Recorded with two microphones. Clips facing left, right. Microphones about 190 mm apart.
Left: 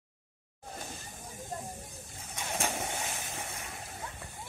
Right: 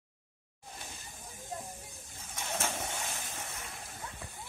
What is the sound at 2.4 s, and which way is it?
Vehicle, 15° left (ahead or behind).